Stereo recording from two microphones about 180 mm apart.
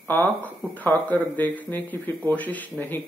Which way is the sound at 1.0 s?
10° left (ahead or behind).